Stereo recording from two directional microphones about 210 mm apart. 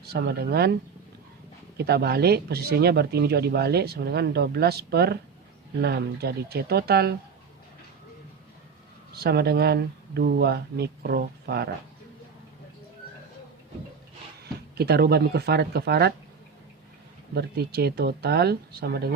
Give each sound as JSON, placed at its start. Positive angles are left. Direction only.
{"t": 0.0, "sound": "speech", "side_deg": -50}
{"t": 1.8, "sound": "speech", "side_deg": -50}
{"t": 9.1, "sound": "speech", "side_deg": -50}
{"t": 14.4, "sound": "speech", "side_deg": -50}
{"t": 17.3, "sound": "speech", "side_deg": -50}